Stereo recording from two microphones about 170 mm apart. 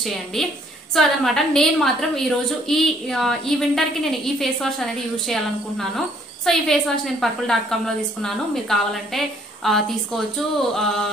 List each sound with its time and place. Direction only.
0.0 s a woman's voice: centre (ahead or behind)